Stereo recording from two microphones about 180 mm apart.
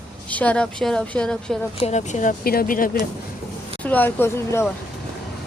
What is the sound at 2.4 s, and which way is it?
Speech, 55° left (ahead or behind).